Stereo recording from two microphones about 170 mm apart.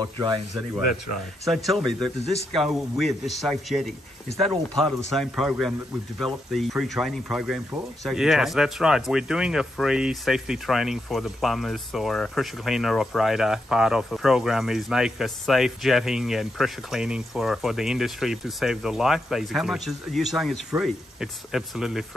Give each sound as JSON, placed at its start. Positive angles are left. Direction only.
{"t": 0.0, "sound": "speech", "side_deg": -25}
{"t": 1.5, "sound": "speech", "side_deg": 0}